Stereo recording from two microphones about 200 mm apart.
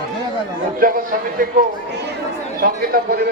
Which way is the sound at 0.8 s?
45° right (ahead or behind).